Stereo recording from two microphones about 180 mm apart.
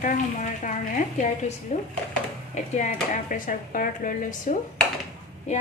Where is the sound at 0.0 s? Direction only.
45° left (ahead or behind).